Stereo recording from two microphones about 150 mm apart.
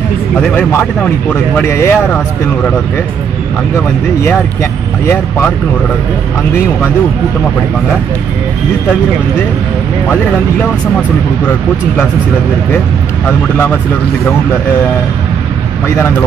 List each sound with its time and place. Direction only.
0.4 s speech: 5° left (ahead or behind)
5.0 s speech: 10° left (ahead or behind)